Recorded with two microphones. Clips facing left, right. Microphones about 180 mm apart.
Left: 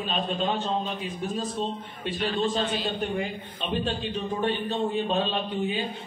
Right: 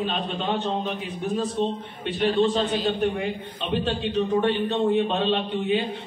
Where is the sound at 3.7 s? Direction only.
70° right (ahead or behind).